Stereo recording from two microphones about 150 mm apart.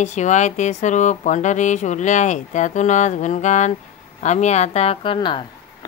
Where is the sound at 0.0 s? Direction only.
55° left (ahead or behind).